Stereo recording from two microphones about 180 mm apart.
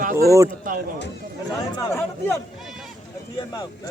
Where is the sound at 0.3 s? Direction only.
15° right (ahead or behind).